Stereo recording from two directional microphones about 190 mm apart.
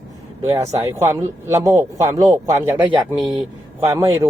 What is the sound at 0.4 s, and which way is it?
A man's voice, 15° right (ahead or behind).